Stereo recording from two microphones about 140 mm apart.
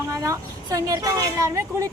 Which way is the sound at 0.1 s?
25° right (ahead or behind).